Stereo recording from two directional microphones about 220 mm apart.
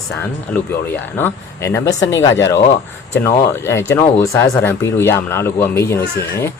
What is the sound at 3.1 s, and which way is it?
Speech, 10° left (ahead or behind).